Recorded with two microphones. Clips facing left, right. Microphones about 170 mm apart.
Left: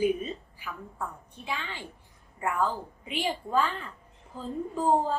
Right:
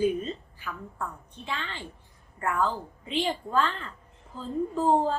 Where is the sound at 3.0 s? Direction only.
10° left (ahead or behind).